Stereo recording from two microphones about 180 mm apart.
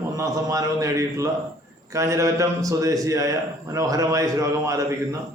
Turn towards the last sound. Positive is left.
turn(degrees=-20)  # may be behind; listen again after turning